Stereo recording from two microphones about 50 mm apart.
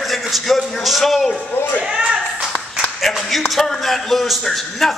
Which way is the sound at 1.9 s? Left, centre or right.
Centre.